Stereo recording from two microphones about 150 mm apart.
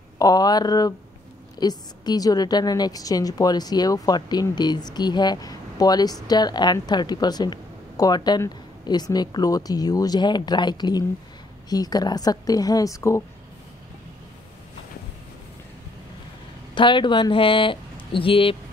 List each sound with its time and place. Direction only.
0.2 s a woman's voice: 25° left (ahead or behind)
16.7 s speech: 30° left (ahead or behind)